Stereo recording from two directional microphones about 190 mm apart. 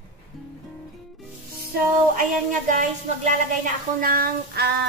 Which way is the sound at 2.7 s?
40° right (ahead or behind).